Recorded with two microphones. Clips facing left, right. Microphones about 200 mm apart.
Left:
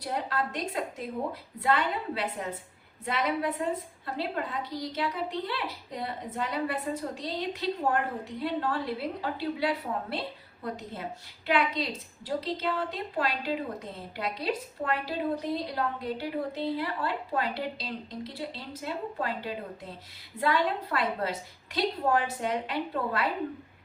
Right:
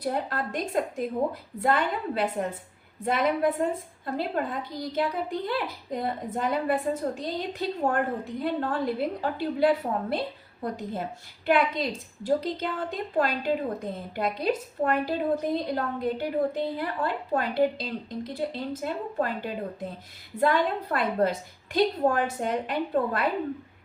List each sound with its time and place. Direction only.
0.0 s a woman's voice: 50° right (ahead or behind)
11.4 s a woman's voice: 45° right (ahead or behind)